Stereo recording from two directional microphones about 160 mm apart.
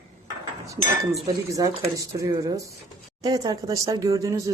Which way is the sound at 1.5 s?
20° right (ahead or behind).